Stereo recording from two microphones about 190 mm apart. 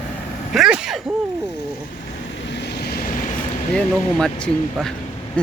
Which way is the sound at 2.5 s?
65° left (ahead or behind).